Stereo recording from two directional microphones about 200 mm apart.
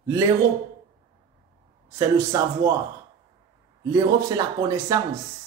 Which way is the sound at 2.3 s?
15° right (ahead or behind).